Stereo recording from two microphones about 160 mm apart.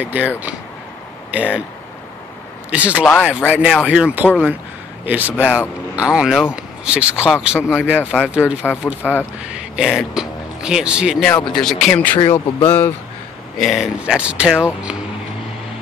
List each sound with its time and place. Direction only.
0.0 s speech: 10° right (ahead or behind)
1.3 s speech: 10° right (ahead or behind)
2.7 s speech: 10° right (ahead or behind)
8.6 s speech: 10° left (ahead or behind)
9.5 s speech: 5° right (ahead or behind)
11.2 s speech: 5° left (ahead or behind)
12.2 s speech: 30° left (ahead or behind)
12.6 s speech: 10° left (ahead or behind)
13.6 s speech: centre (ahead or behind)